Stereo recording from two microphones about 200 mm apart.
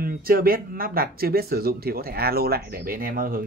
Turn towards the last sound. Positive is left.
turn(degrees=-45)  # may be behind; listen again after turning